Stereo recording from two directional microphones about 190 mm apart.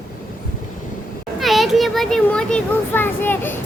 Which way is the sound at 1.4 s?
Centre (ahead or behind).